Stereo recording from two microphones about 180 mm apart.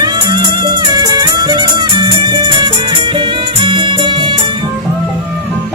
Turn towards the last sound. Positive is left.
turn(degrees=-25)  # may be behind; listen again after turning